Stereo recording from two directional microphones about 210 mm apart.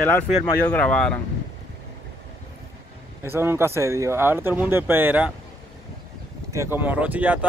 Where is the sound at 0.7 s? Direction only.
5° left (ahead or behind).